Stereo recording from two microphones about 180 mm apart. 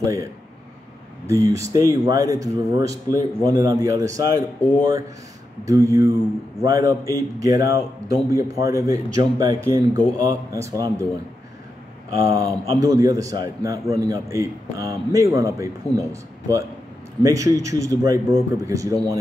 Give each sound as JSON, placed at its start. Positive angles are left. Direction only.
{"t": 0.0, "sound": "a man's voice", "side_deg": -15}
{"t": 4.6, "sound": "speech", "side_deg": 5}
{"t": 5.7, "sound": "a man's voice", "side_deg": -20}
{"t": 12.2, "sound": "a man's voice", "side_deg": -20}